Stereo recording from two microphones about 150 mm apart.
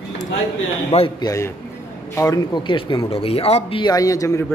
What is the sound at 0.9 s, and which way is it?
Speech, 35° left (ahead or behind).